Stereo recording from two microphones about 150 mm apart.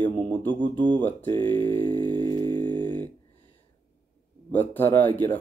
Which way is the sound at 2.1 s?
30° right (ahead or behind).